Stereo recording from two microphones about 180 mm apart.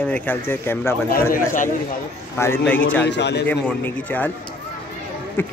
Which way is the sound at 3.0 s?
75° left (ahead or behind).